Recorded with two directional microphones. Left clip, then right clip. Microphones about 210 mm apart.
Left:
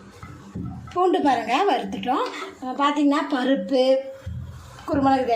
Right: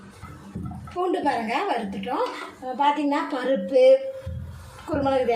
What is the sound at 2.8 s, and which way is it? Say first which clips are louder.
A woman's voice: left 1 dB; 25° left (ahead or behind).